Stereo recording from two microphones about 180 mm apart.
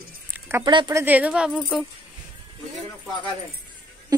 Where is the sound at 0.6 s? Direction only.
25° right (ahead or behind).